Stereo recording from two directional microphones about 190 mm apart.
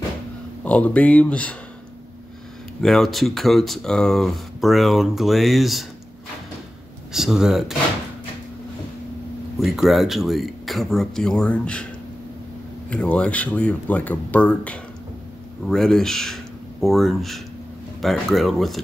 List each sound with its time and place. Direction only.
0.7 s speech: 5° left (ahead or behind)
2.8 s speech: centre (ahead or behind)
7.1 s speech: centre (ahead or behind)
9.6 s speech: centre (ahead or behind)
12.9 s speech: 5° left (ahead or behind)